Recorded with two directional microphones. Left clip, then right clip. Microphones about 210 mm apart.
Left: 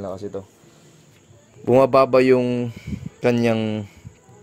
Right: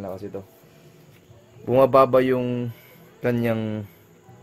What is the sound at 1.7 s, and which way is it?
Speech, 30° left (ahead or behind).